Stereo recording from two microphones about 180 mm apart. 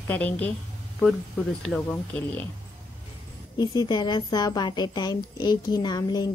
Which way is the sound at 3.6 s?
25° left (ahead or behind).